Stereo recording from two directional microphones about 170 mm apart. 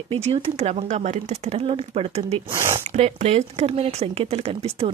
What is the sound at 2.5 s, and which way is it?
Speech, 15° right (ahead or behind).